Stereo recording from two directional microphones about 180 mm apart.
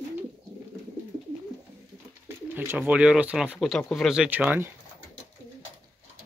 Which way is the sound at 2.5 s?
10° right (ahead or behind).